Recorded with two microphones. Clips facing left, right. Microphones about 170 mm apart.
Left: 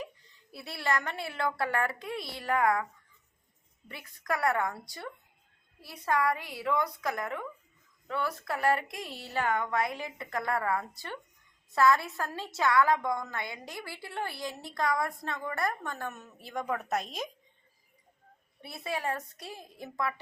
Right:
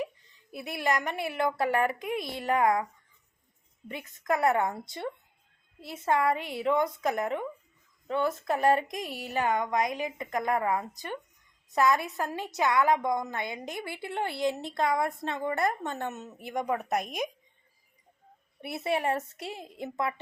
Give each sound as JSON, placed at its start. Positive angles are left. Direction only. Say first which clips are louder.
{"t": 0.5, "sound": "a woman's voice", "louder": "right 3 dB", "side_deg": -20}
{"t": 3.8, "sound": "a woman's voice", "louder": "right 4 dB", "side_deg": -20}
{"t": 18.7, "sound": "a woman's voice", "louder": "right 6 dB", "side_deg": -25}